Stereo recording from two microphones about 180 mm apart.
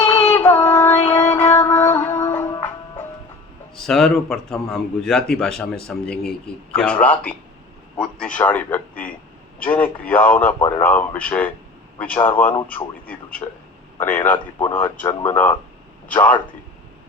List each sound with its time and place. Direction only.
0.3 s child singing: 10° left (ahead or behind)
1.0 s music: 15° left (ahead or behind)
3.8 s a man's voice: centre (ahead or behind)